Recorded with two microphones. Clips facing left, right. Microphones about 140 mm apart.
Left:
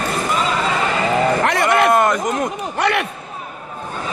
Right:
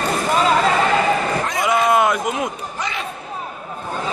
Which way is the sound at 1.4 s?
70° left (ahead or behind).